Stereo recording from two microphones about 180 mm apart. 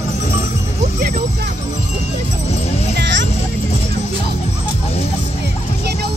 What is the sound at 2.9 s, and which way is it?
Music, 80° right.